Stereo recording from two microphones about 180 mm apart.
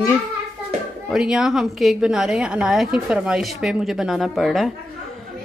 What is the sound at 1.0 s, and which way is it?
A woman's voice, 5° right (ahead or behind).